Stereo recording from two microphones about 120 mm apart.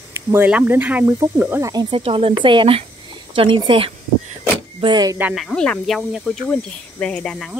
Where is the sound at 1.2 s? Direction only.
30° right (ahead or behind).